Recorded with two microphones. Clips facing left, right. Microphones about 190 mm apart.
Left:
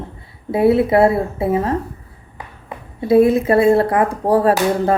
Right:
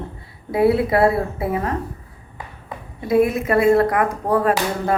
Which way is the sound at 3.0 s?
30° left (ahead or behind).